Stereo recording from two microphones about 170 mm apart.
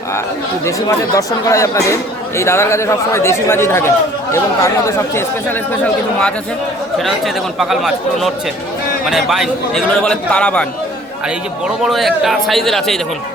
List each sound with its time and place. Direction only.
0.6 s a man's voice: 20° left (ahead or behind)
11.8 s a man's voice: centre (ahead or behind)